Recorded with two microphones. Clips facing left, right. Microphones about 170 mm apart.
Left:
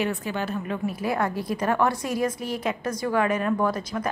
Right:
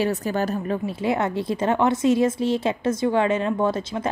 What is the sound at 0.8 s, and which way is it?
A woman's voice, 25° right (ahead or behind).